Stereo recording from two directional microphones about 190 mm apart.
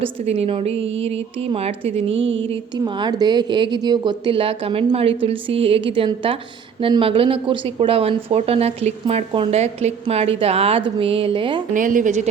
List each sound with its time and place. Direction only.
0.0 s speech: 30° right (ahead or behind)
2.1 s music: 80° right
2.4 s a woman's voice: 25° right (ahead or behind)
11.7 s a woman's voice: 45° right (ahead or behind)